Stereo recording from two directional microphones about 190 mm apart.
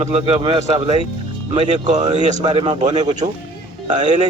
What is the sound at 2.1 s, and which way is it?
A man's voice, 20° right (ahead or behind).